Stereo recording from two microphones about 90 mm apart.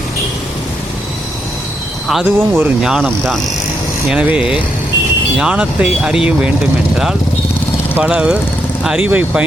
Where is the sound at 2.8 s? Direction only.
5° right (ahead or behind).